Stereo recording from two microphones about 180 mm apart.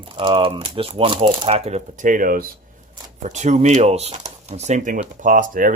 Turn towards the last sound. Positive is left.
turn(degrees=-50)  # may be behind; listen again after turning